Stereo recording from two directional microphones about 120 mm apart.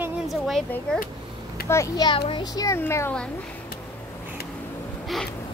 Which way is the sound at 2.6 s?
20° left (ahead or behind).